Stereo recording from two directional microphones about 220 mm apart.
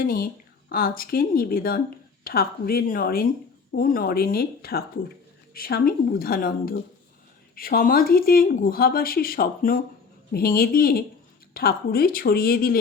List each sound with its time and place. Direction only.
0.0 s a woman's voice: 40° left (ahead or behind)